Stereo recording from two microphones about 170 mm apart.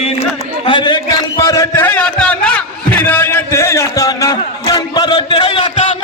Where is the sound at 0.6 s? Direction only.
25° left (ahead or behind).